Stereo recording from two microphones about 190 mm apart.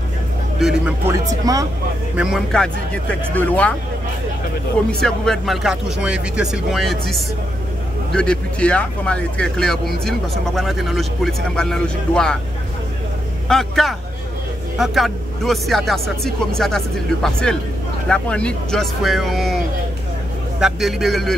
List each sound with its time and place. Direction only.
0.6 s speech: 5° right (ahead or behind)
1.1 s speech: 20° right (ahead or behind)
2.1 s speech: centre (ahead or behind)
5.0 s speech: centre (ahead or behind)
13.5 s speech: centre (ahead or behind)
20.6 s speech: centre (ahead or behind)